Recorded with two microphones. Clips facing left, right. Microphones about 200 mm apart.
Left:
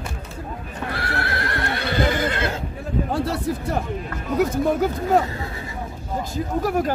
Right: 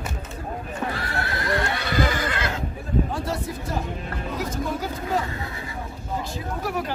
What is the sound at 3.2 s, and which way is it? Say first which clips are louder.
Speech: left 4 dB; 65° left (ahead or behind).